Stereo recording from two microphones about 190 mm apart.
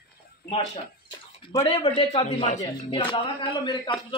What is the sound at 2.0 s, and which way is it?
A man's voice, 30° left (ahead or behind).